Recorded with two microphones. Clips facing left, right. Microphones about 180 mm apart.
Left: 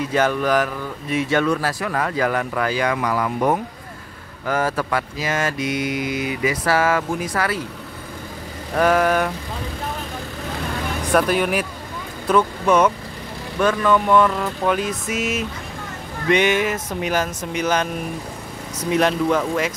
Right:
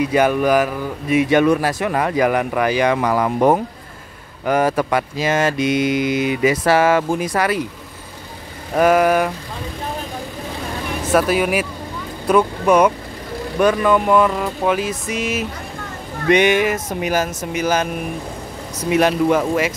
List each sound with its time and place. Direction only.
0.0 s speech: 10° right (ahead or behind)
3.0 s speech: 35° right (ahead or behind)
4.5 s cattle: 20° right (ahead or behind)
8.7 s speech: 10° right (ahead or behind)
11.1 s speech: 5° right (ahead or behind)
16.3 s speech: 15° right (ahead or behind)
18.9 s speech: 10° right (ahead or behind)